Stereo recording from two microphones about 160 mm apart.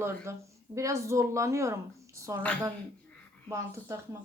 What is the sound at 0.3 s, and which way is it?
A woman's voice, 15° right (ahead or behind).